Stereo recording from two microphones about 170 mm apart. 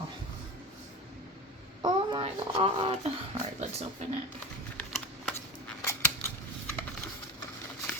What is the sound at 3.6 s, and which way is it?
Speech, 40° right (ahead or behind).